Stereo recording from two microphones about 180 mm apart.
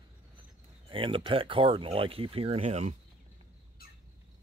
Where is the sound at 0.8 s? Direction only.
30° right (ahead or behind).